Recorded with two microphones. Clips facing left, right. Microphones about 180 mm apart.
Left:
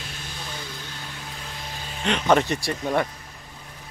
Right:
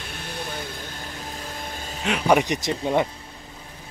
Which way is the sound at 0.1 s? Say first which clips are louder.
Right 5 dB; 60° right (ahead or behind).